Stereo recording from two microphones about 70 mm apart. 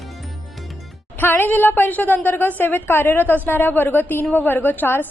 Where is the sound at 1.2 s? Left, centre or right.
Left.